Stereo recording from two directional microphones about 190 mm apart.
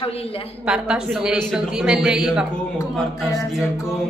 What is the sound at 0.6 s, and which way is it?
A woman's voice, 5° right (ahead or behind).